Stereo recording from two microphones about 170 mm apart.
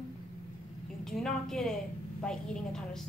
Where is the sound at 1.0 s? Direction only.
5° left (ahead or behind).